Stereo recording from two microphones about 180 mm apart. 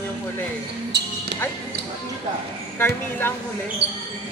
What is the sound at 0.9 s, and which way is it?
Speech, 70° right (ahead or behind).